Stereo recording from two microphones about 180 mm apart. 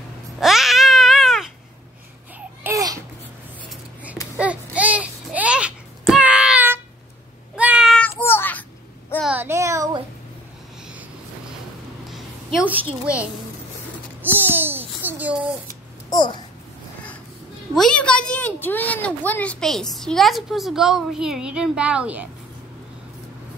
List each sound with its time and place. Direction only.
0.4 s cat: centre (ahead or behind)
2.6 s babbling: 20° right (ahead or behind)
4.4 s a sound: 5° right (ahead or behind)
7.5 s meow: 5° right (ahead or behind)
7.9 s child singing: 10° left (ahead or behind)
9.2 s child singing: 10° right (ahead or behind)
12.5 s a sound: 10° right (ahead or behind)
13.0 s a child's voice: 5° right (ahead or behind)
14.2 s babbling: 10° right (ahead or behind)
15.0 s a sound: 10° right (ahead or behind)
16.1 s babbling: 25° left (ahead or behind)
17.7 s a sound: 5° left (ahead or behind)